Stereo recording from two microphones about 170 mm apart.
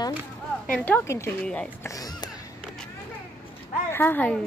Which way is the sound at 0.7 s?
10° left (ahead or behind).